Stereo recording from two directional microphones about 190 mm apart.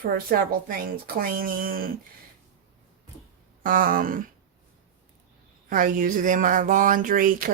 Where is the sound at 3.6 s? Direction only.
45° right (ahead or behind).